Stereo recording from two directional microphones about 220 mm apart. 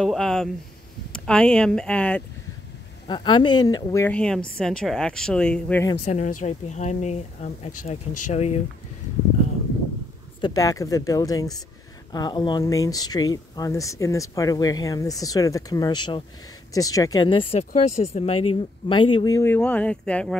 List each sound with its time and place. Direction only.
0.0 s speech: centre (ahead or behind)
3.1 s speech: 20° left (ahead or behind)
6.0 s speech: 35° left (ahead or behind)
10.4 s speech: 15° left (ahead or behind)
17.8 s speech: 90° left
18.1 s speech: 30° left (ahead or behind); by 20.3 s 5° left (ahead or behind)